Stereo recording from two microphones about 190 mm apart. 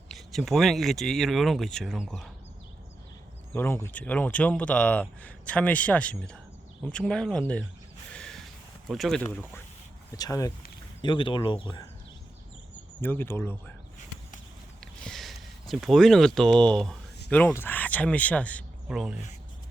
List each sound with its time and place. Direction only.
0.1 s speech: centre (ahead or behind)
3.5 s a man's voice: 10° left (ahead or behind)
8.1 s a sound: 5° left (ahead or behind)
8.9 s speech: centre (ahead or behind)
9.2 s a man's voice: 10° left (ahead or behind)
13.0 s a man's voice: 10° left (ahead or behind)
15.0 s speech: centre (ahead or behind)
18.9 s speech: 5° right (ahead or behind)